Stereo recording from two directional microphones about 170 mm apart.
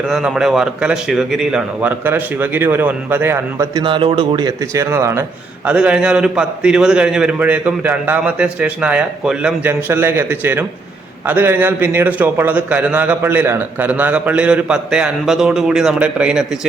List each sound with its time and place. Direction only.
0.1 s a man's voice: 5° right (ahead or behind)
3.8 s a man's voice: 30° right (ahead or behind); by 16.6 s 5° right (ahead or behind)